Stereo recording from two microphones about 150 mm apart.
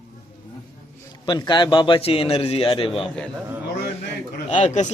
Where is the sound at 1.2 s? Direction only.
30° left (ahead or behind).